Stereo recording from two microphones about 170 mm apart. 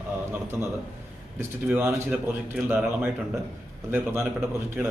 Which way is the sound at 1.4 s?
10° right (ahead or behind).